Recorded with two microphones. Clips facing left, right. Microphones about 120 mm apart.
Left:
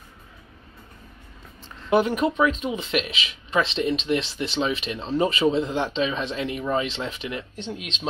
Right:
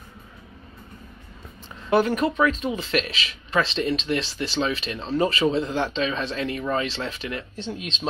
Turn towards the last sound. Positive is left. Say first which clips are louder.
# right 1 dB
turn(degrees=15)  # may be behind; listen again after turning